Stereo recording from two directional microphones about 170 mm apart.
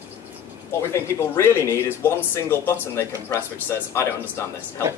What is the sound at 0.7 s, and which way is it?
Speech, 15° left (ahead or behind).